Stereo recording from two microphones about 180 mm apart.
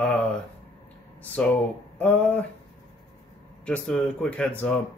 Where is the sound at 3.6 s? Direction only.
5° left (ahead or behind).